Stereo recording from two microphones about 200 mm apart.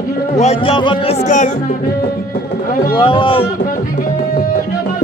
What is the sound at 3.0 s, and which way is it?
Speech, 25° left (ahead or behind).